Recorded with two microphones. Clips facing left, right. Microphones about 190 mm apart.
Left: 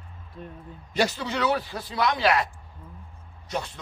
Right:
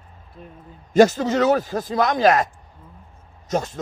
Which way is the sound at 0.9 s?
45° right (ahead or behind).